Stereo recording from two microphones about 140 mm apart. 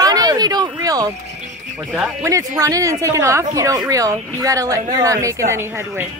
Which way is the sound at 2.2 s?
25° right (ahead or behind).